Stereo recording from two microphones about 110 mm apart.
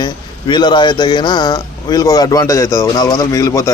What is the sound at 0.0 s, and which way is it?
Speech, 40° left (ahead or behind).